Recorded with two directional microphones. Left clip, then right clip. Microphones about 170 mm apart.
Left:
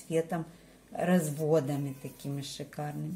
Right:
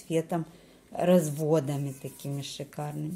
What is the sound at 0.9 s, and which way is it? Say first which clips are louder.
A woman's voice: right 6 dB; 40° right (ahead or behind).